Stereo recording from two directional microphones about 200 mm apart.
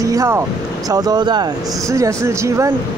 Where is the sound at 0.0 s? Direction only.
15° right (ahead or behind).